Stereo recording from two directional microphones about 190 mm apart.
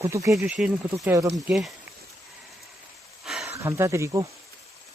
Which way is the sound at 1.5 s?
Centre (ahead or behind).